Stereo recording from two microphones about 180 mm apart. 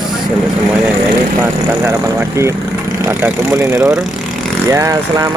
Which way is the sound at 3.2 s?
10° right (ahead or behind).